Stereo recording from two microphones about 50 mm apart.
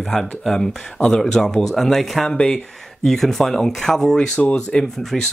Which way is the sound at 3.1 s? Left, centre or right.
Centre.